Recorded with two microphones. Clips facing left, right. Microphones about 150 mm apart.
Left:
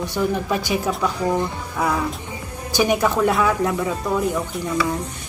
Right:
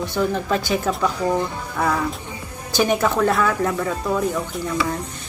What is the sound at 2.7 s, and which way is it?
Speech, 15° left (ahead or behind).